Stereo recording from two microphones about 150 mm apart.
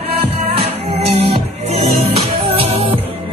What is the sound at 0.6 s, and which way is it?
Music, 40° right (ahead or behind).